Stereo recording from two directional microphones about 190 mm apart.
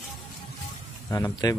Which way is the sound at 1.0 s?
15° left (ahead or behind).